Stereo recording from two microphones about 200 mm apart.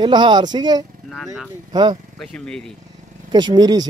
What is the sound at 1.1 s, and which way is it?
Speech, centre (ahead or behind).